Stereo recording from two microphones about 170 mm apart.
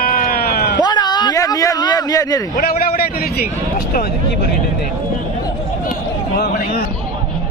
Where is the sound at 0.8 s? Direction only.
25° left (ahead or behind).